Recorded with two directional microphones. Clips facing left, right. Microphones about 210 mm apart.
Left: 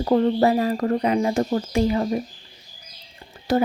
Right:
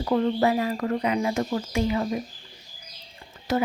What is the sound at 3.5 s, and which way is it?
Speech, 35° left (ahead or behind).